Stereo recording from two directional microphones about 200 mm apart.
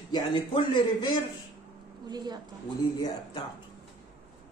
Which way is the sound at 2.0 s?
20° right (ahead or behind).